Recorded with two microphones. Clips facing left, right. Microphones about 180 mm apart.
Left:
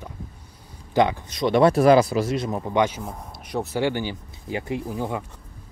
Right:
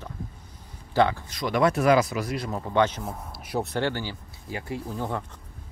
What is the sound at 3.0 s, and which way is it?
Speech, 5° right (ahead or behind).